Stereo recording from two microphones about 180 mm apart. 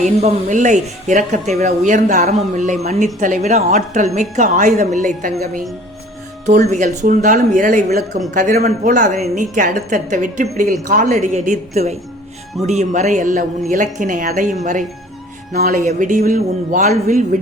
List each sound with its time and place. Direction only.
0.2 s a woman's voice: 40° right (ahead or behind)
6.7 s a woman's voice: 45° right (ahead or behind)
15.5 s a woman's voice: 55° right (ahead or behind)